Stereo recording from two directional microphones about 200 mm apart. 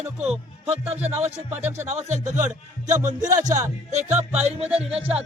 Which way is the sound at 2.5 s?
15° right (ahead or behind).